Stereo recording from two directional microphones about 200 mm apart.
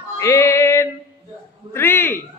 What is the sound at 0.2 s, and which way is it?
Music, 15° left (ahead or behind).